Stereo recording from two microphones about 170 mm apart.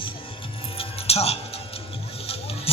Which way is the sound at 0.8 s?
35° left (ahead or behind).